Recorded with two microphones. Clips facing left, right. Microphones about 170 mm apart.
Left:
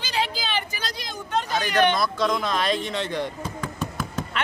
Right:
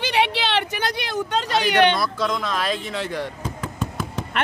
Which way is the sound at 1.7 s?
75° right (ahead or behind).